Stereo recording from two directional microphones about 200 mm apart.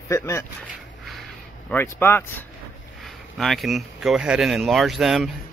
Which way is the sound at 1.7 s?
10° left (ahead or behind).